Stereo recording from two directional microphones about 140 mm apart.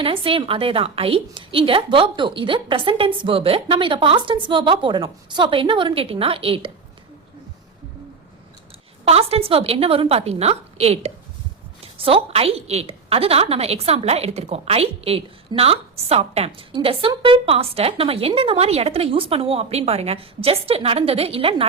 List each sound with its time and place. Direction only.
0.0 s a woman's voice: 40° right (ahead or behind)
9.0 s a woman's voice: 45° right (ahead or behind)